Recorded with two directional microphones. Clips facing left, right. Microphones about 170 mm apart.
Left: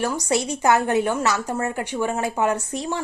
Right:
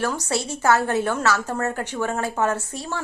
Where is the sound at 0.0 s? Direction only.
15° left (ahead or behind).